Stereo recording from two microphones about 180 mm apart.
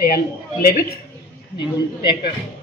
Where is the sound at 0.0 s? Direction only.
55° left (ahead or behind).